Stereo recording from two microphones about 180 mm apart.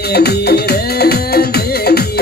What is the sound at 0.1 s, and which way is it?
Music, 60° left (ahead or behind).